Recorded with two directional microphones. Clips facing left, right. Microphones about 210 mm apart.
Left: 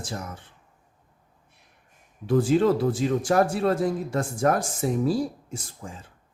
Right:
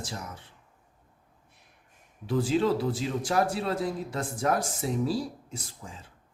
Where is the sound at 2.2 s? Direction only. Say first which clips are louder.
Left 5 dB; 50° left (ahead or behind).